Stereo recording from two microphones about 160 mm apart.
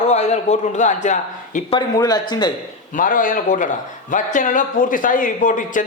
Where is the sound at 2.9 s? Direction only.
55° left (ahead or behind).